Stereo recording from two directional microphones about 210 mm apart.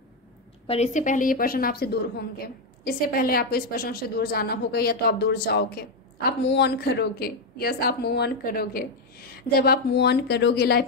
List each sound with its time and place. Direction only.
0.7 s a woman's voice: 30° left (ahead or behind); by 10.9 s 50° left (ahead or behind)